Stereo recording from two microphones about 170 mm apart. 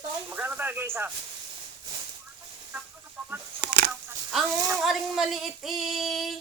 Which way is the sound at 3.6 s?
75° right (ahead or behind).